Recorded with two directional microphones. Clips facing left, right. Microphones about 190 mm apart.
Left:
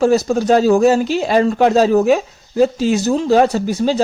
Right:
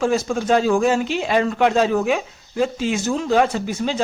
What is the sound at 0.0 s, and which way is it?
Speech, 40° left (ahead or behind).